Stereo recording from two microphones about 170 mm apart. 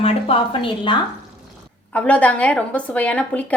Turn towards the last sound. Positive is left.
turn(degrees=10)  # may be behind; listen again after turning